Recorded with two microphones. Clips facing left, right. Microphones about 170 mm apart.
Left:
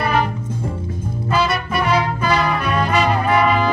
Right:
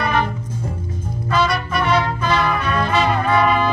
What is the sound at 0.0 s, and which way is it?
Music, 10° left (ahead or behind).